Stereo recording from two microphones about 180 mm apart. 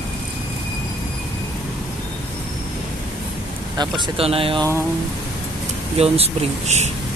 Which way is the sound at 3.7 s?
25° right (ahead or behind).